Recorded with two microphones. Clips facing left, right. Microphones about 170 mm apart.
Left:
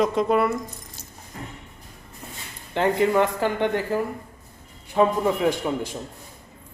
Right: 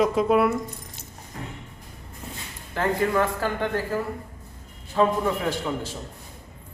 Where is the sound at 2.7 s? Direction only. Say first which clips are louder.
Left 3 dB; 20° left (ahead or behind).